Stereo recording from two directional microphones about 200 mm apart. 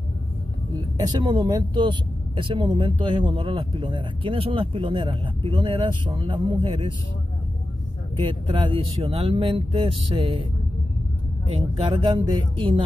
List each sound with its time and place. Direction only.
0.7 s speech: 20° right (ahead or behind)
8.2 s speech: 25° right (ahead or behind)
11.5 s speech: 30° right (ahead or behind)